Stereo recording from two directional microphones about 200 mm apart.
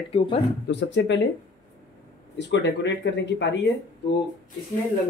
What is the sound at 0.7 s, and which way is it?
Speech, 60° left (ahead or behind).